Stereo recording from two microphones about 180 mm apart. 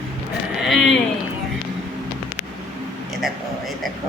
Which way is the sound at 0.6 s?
Centre (ahead or behind).